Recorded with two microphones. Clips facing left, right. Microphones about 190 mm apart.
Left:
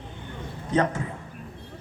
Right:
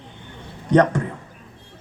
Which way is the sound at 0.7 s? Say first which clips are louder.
Right 8 dB; 70° right (ahead or behind).